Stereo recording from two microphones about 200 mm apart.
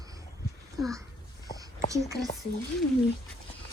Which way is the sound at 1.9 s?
15° right (ahead or behind).